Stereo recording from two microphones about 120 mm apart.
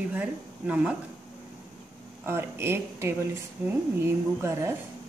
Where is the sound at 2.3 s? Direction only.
20° right (ahead or behind).